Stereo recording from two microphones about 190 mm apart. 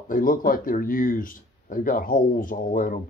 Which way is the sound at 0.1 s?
45° left (ahead or behind).